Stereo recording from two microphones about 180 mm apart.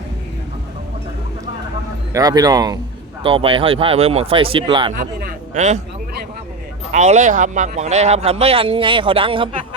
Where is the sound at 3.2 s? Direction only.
30° right (ahead or behind).